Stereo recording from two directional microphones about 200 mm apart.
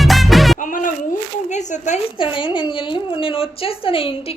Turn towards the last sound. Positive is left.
turn(degrees=25)  # may be behind; listen again after turning